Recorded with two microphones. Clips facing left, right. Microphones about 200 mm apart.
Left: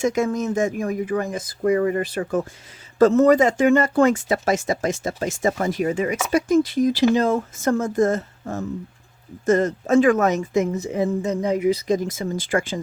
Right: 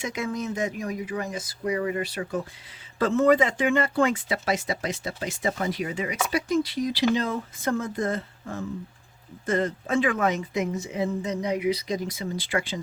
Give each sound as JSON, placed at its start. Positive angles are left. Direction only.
{"t": 0.0, "sound": "speech", "side_deg": 45}